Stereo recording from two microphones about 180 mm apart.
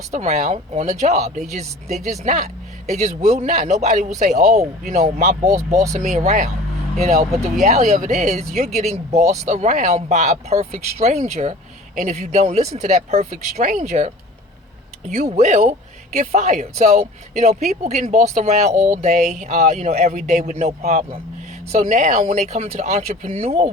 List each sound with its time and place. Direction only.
0.1 s speech: 40° right (ahead or behind)
5.4 s speech: 20° right (ahead or behind)
5.9 s speech: 45° right (ahead or behind)
7.6 s speech: 40° right (ahead or behind)
15.1 s speech: 40° right (ahead or behind)